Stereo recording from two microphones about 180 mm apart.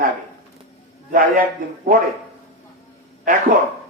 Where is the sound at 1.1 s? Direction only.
50° right (ahead or behind).